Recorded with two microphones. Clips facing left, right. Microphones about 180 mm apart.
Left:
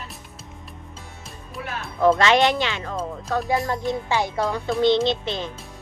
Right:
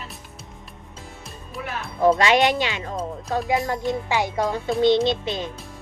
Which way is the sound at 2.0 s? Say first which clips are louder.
Even; 20° right (ahead or behind).